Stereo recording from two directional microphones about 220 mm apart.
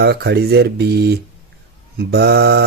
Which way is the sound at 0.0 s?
50° right (ahead or behind).